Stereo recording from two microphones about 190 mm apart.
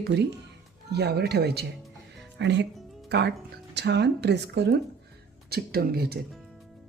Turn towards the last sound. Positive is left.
turn(degrees=-55)  # may be behind; listen again after turning